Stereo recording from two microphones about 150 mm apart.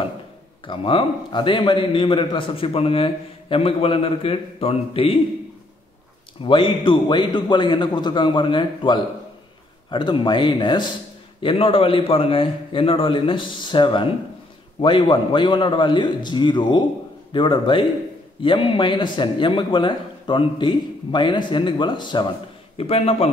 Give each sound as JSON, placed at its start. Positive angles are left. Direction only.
{"t": 0.7, "sound": "a man's voice", "side_deg": 35}
{"t": 6.4, "sound": "a man's voice", "side_deg": 35}